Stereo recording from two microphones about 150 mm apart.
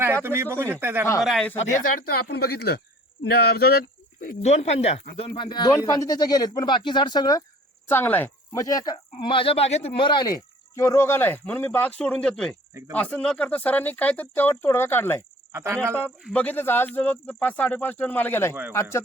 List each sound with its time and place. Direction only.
0.0 s speech: 15° right (ahead or behind)
1.2 s speech: centre (ahead or behind)
1.8 s speech: 70° left (ahead or behind)
4.4 s speech: 45° left (ahead or behind)
5.4 s speech: 30° left (ahead or behind)
7.9 s speech: 15° left (ahead or behind)
8.5 s speech: 25° left (ahead or behind)
15.5 s speech: 15° right (ahead or behind)
16.3 s speech: 10° left (ahead or behind)